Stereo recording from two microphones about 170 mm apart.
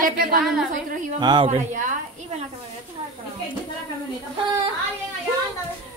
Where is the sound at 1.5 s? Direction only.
50° right (ahead or behind).